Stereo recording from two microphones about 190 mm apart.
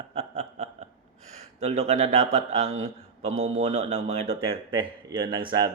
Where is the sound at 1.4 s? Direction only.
35° right (ahead or behind).